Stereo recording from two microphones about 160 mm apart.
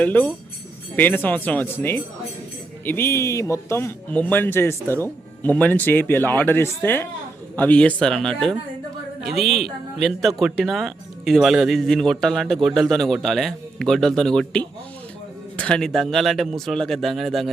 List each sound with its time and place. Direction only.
0.0 s speech: 10° left (ahead or behind)